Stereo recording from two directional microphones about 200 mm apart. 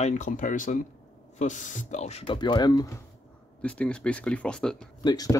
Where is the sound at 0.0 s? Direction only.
40° left (ahead or behind); by 3.0 s 20° left (ahead or behind).